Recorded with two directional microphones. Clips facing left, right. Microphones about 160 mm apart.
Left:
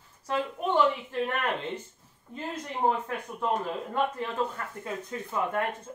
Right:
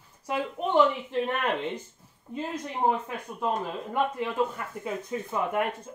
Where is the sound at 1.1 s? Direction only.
15° right (ahead or behind).